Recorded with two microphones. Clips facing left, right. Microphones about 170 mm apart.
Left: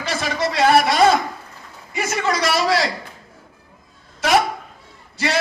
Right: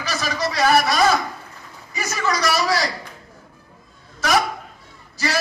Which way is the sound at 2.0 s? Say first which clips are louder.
Left 2 dB; 25° left (ahead or behind).